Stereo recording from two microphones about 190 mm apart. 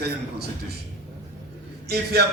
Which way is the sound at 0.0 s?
55° right (ahead or behind).